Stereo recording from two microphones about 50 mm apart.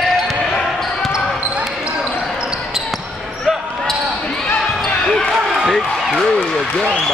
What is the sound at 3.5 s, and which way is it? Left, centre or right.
Basketball bounce, centre.